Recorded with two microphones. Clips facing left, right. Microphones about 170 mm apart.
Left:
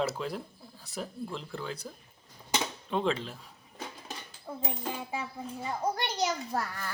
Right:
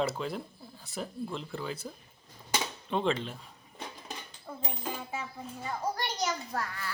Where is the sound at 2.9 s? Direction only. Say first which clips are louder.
Right 1 dB; centre (ahead or behind).